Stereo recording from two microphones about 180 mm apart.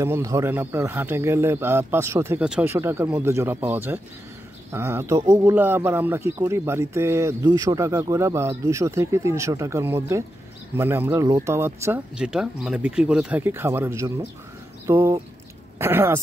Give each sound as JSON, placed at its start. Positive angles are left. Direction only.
{"t": 0.0, "sound": "speech", "side_deg": -15}